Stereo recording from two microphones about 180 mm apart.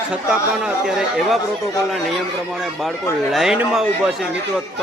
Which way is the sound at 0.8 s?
Centre (ahead or behind).